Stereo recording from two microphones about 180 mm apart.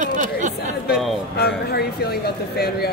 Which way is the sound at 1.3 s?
65° left (ahead or behind).